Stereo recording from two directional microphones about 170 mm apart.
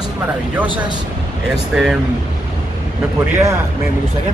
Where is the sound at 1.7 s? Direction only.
Centre (ahead or behind).